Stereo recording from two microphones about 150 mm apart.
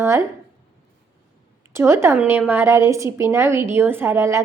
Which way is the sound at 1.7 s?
15° right (ahead or behind).